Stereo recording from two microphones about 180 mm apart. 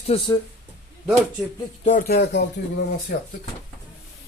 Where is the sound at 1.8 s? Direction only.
45° left (ahead or behind).